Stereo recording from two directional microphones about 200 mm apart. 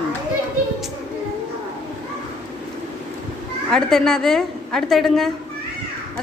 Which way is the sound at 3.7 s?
5° left (ahead or behind).